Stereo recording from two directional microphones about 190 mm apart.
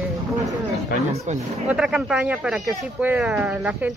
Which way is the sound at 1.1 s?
40° right (ahead or behind).